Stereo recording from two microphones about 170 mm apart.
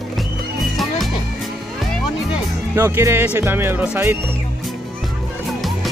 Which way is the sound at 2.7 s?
15° right (ahead or behind).